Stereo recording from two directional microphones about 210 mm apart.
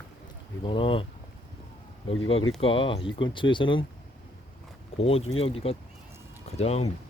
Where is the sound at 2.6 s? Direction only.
25° left (ahead or behind).